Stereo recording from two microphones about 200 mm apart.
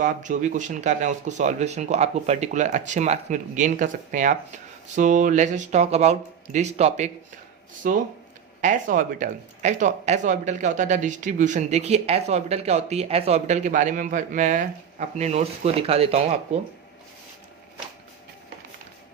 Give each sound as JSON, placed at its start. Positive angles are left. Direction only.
{"t": 0.0, "sound": "speech", "side_deg": -40}